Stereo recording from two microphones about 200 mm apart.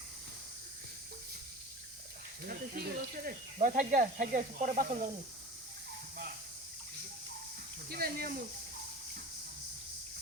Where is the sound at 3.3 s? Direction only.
40° right (ahead or behind).